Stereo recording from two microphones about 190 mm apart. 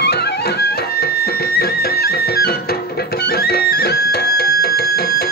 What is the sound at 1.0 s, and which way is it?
Music, 55° left (ahead or behind).